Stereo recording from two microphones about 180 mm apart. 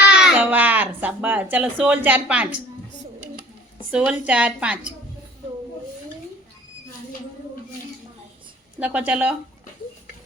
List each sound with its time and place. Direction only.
0.0 s a sound: 70° left (ahead or behind)
0.3 s a child's voice: 10° right (ahead or behind)
3.9 s a child's voice: 5° right (ahead or behind)
8.8 s a child's voice: 10° right (ahead or behind)